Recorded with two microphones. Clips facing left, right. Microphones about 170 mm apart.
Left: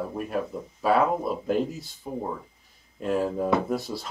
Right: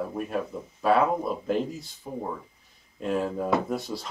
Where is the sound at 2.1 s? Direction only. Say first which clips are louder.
Left 2 dB; 10° left (ahead or behind).